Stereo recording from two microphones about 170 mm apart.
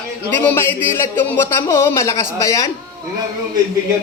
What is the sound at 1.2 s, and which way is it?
A man's voice, 10° left (ahead or behind).